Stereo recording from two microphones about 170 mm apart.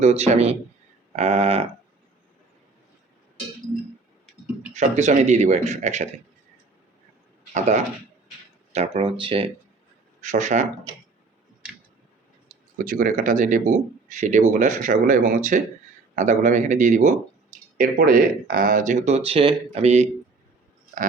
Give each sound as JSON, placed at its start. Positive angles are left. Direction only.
{"t": 0.0, "sound": "speech", "side_deg": -40}
{"t": 4.7, "sound": "speech", "side_deg": -40}
{"t": 8.7, "sound": "speech", "side_deg": -35}
{"t": 10.2, "sound": "speech", "side_deg": -45}
{"t": 12.8, "sound": "speech", "side_deg": -50}